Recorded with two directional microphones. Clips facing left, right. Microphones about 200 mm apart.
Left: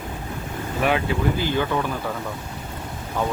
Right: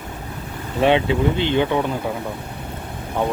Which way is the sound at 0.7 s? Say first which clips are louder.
Right 6 dB; 25° right (ahead or behind).